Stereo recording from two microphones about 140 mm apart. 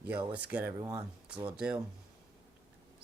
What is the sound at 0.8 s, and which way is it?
Speech, 25° right (ahead or behind).